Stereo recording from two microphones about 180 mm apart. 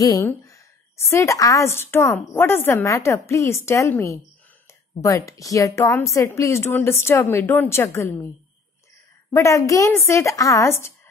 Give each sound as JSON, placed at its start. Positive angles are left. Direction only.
{"t": 0.0, "sound": "a woman's voice", "side_deg": 20}
{"t": 9.3, "sound": "a woman's voice", "side_deg": 15}